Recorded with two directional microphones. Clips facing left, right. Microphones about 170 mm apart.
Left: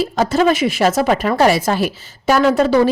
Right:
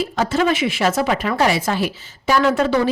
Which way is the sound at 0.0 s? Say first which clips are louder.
Left 4 dB; 40° left (ahead or behind).